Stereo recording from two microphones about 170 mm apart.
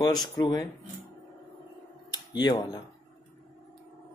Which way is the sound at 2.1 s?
25° left (ahead or behind).